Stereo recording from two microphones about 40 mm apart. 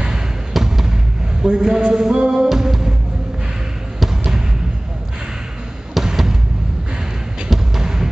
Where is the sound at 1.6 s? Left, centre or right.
Centre.